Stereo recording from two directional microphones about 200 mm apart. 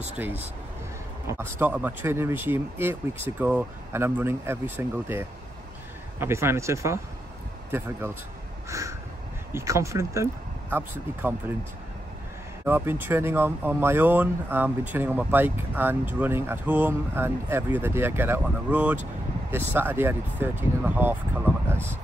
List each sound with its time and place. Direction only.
1.2 s speech: 10° right (ahead or behind)
8.6 s crow: 15° right (ahead or behind)
9.5 s speech: 15° right (ahead or behind)
12.6 s speech: 10° right (ahead or behind)